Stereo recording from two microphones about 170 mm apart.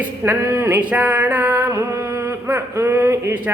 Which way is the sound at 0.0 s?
15° right (ahead or behind).